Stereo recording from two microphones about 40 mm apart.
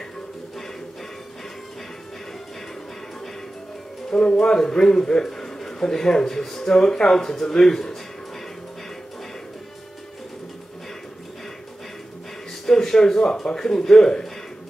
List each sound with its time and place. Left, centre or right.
4.1 s a man's voice: left
12.6 s a man's voice: centre